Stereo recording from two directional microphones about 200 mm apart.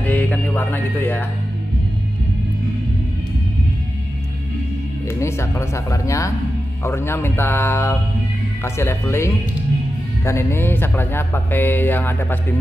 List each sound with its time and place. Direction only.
0.0 s music: 10° left (ahead or behind)
5.0 s speech: 15° left (ahead or behind)